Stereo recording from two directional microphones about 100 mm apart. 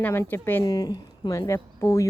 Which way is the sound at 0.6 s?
35° left (ahead or behind).